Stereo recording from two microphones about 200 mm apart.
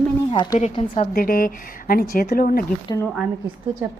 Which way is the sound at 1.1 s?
45° left (ahead or behind).